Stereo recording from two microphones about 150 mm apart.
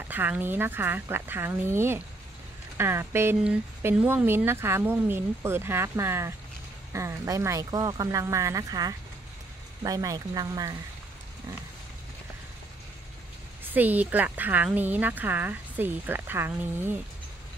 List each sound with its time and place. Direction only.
0.1 s speech: 10° right (ahead or behind)
13.7 s speech: 10° right (ahead or behind)